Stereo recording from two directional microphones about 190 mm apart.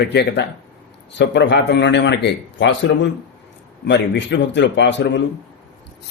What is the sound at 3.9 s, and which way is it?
A man's voice, 70° left (ahead or behind).